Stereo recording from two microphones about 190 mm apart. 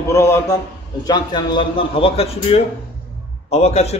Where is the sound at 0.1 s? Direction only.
15° left (ahead or behind).